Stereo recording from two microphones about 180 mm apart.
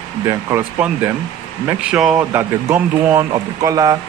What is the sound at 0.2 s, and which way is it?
Speech, 15° right (ahead or behind).